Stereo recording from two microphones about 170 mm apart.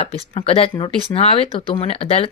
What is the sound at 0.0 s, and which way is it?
Speech, 35° left (ahead or behind).